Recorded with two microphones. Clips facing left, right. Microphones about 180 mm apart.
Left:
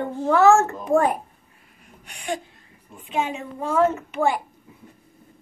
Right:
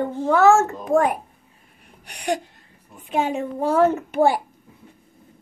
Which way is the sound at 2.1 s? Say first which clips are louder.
Right 5 dB; 40° right (ahead or behind).